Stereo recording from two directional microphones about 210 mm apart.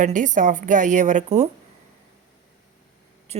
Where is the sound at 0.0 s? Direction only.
35° right (ahead or behind).